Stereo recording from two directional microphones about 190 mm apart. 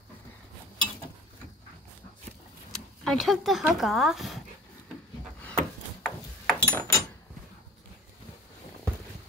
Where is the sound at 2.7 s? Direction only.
5° left (ahead or behind).